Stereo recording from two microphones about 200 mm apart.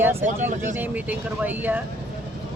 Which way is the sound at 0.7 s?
10° right (ahead or behind).